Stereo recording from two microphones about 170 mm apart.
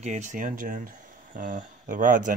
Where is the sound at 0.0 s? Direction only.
45° right (ahead or behind).